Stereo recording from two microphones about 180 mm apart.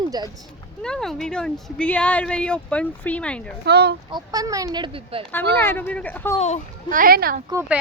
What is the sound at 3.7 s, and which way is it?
Speech, 65° right (ahead or behind).